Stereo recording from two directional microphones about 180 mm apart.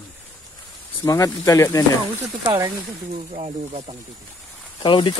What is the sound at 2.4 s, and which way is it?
Speech, 20° right (ahead or behind).